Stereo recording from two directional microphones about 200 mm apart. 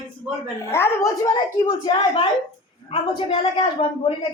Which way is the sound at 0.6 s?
10° left (ahead or behind).